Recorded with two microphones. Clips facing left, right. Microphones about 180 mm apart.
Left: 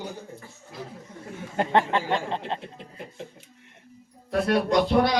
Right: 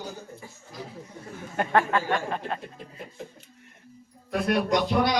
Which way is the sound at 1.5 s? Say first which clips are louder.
Left 1 dB; 25° left (ahead or behind).